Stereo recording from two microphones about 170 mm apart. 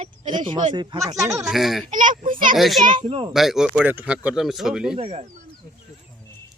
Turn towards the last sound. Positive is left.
turn(degrees=-35)  # may be behind; listen again after turning